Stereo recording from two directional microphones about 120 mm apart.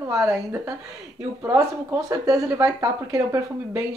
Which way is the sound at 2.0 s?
30° right (ahead or behind).